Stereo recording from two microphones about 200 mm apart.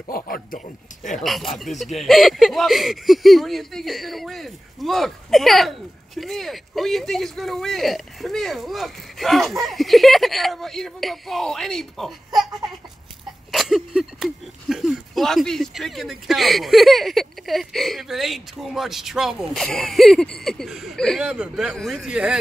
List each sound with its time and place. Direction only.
0.1 s a man's voice: 45° left (ahead or behind)
1.1 s speech: centre (ahead or behind)
13.5 s speech: centre (ahead or behind)